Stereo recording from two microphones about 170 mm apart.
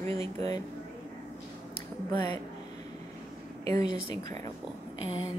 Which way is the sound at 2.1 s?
25° left (ahead or behind).